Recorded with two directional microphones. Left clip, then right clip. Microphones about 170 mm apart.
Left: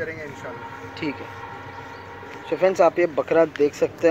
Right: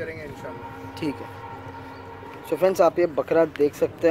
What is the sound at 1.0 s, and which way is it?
Speech, 15° right (ahead or behind).